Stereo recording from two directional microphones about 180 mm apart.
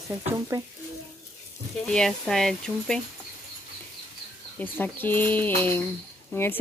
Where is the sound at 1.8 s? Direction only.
5° left (ahead or behind).